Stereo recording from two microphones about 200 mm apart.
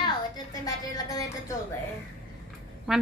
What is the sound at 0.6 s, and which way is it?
Speech, 20° left (ahead or behind).